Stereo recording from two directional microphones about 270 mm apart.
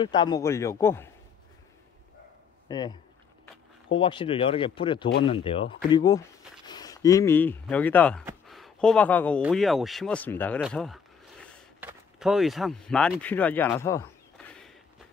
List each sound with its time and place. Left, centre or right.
0.0 s a man's voice: centre
2.7 s a man's voice: centre
8.3 s a sound: centre
9.4 s speech: centre